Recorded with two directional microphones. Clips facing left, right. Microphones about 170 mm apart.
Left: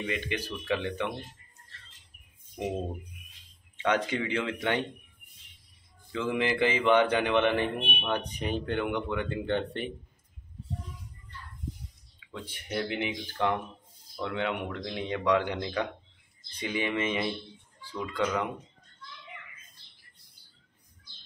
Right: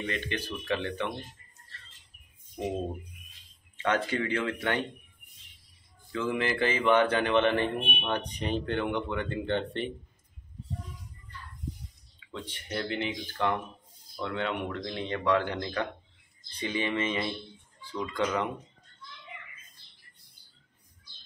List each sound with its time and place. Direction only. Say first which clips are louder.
0.0 s speech: left 1 dB; 10° left (ahead or behind)
3.7 s speech: left 1 dB; 15° left (ahead or behind)
6.1 s speech: left 1 dB; 15° left (ahead or behind)
12.3 s speech: even; 10° left (ahead or behind)